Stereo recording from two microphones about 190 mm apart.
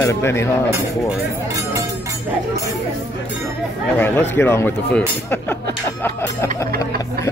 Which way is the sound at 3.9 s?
10° left (ahead or behind).